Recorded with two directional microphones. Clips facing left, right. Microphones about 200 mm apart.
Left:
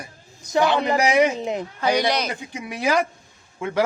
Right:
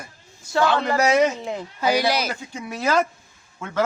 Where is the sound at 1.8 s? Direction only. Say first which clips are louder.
Right 1 dB; 5° right (ahead or behind).